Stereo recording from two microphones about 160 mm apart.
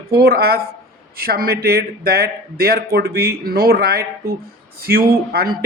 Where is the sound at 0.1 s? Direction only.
75° right (ahead or behind).